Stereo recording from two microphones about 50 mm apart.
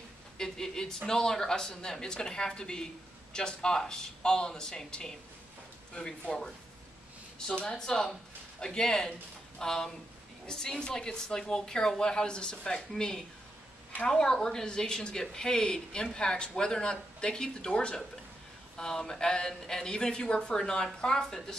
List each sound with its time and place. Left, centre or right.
0.4 s speech: centre
6.2 s speech: centre